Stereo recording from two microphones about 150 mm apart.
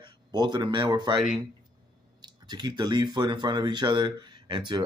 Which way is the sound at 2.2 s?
30° right (ahead or behind).